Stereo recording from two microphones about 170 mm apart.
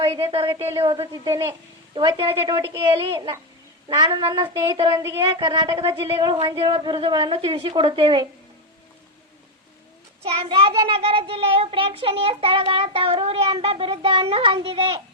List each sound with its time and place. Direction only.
0.0 s a child's voice: 35° right (ahead or behind)
10.2 s a child's voice: 35° right (ahead or behind)